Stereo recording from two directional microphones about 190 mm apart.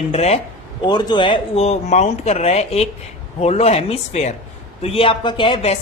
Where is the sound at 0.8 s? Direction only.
25° left (ahead or behind).